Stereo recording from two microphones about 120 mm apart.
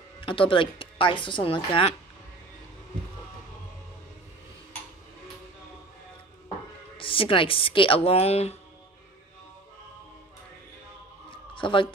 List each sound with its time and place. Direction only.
0.2 s speech: 45° left (ahead or behind)
7.0 s speech: 50° left (ahead or behind)
11.2 s a sound: 45° left (ahead or behind)